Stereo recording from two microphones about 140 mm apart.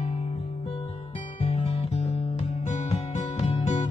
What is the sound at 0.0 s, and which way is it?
Music, 50° left (ahead or behind).